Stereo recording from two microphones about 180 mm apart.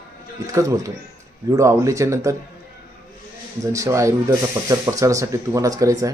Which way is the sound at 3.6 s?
15° right (ahead or behind).